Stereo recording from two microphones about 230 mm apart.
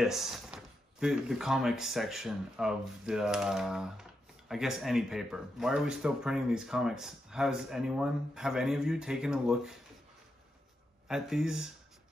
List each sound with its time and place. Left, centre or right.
0.0 s speech: centre
11.1 s speech: centre